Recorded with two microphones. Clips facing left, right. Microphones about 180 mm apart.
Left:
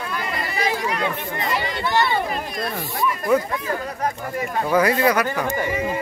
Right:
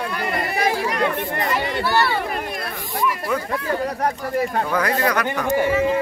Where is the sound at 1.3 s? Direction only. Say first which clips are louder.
Right 2 dB; 60° right (ahead or behind).